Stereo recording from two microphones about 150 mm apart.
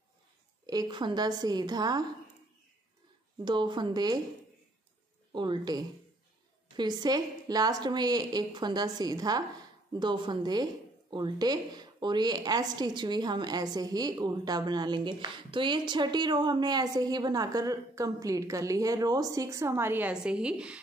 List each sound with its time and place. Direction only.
0.7 s a woman's voice: 30° right (ahead or behind)
3.4 s a woman's voice: 30° right (ahead or behind)
5.3 s a woman's voice: 30° right (ahead or behind); by 20.8 s 5° right (ahead or behind)